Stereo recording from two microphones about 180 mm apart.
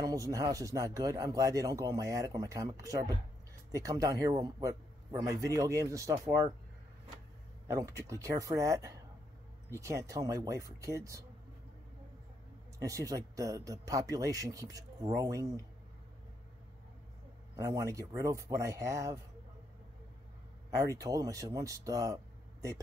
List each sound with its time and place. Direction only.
0.0 s speech: 20° right (ahead or behind)
7.6 s speech: 15° right (ahead or behind)
12.7 s speech: 20° right (ahead or behind)
17.6 s speech: 15° right (ahead or behind)
20.7 s speech: 20° right (ahead or behind)